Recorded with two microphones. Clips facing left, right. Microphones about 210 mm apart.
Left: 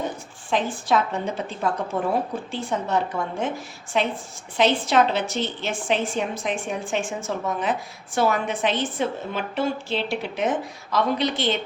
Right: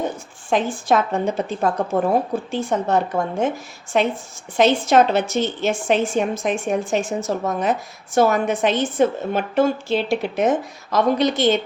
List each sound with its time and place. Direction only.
0.5 s a woman's voice: 45° right (ahead or behind)